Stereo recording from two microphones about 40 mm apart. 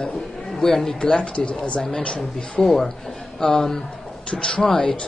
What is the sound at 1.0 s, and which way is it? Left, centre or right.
Speech, left.